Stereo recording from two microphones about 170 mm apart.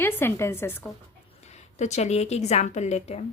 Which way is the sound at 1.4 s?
40° left (ahead or behind).